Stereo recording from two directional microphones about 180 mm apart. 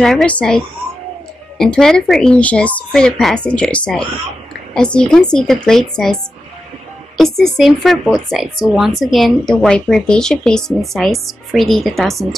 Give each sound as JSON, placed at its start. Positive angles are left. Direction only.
{"t": 0.0, "sound": "speech", "side_deg": 5}
{"t": 7.2, "sound": "speech", "side_deg": 0}